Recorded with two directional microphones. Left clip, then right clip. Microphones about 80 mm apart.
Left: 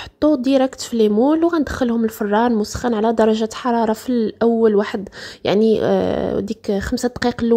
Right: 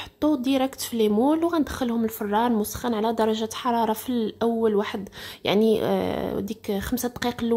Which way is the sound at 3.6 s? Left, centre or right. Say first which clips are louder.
Left 4 dB; left.